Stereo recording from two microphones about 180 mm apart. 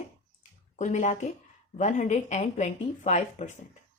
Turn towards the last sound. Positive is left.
turn(degrees=40)  # may be behind; listen again after turning